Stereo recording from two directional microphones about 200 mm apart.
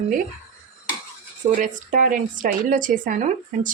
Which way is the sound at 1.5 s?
40° right (ahead or behind).